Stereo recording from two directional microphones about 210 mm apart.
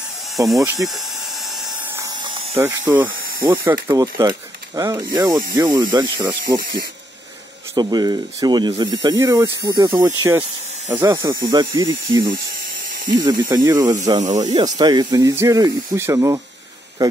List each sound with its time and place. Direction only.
0.4 s speech: 15° right (ahead or behind)
0.7 s a sound: centre (ahead or behind); by 2.6 s 25° right (ahead or behind)
2.6 s speech: 10° right (ahead or behind)
3.1 s hiss: 45° right (ahead or behind)
3.6 s speech: 10° right (ahead or behind)
7.7 s speech: 20° right (ahead or behind)